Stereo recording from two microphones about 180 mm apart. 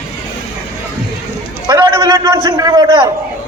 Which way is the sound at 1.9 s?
15° right (ahead or behind).